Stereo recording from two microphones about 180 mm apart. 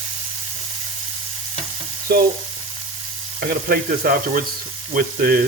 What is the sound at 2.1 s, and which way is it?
Frying, 60° right (ahead or behind).